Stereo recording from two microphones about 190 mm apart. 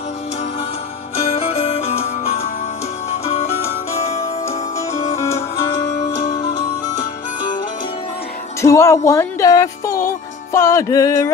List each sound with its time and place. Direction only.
1.3 s music: 30° left (ahead or behind)
5.1 s music: 15° left (ahead or behind)
8.5 s speech: 15° left (ahead or behind)